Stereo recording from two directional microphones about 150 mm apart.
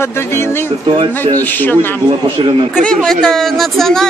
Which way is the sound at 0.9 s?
30° right (ahead or behind).